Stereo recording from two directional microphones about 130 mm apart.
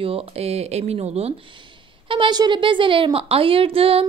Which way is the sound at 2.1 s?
35° right (ahead or behind).